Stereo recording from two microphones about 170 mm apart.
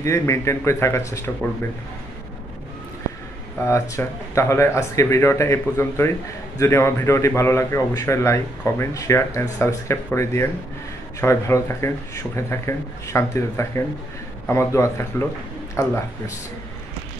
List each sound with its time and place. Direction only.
0.0 s speech: 15° left (ahead or behind)
3.6 s speech: 15° left (ahead or behind)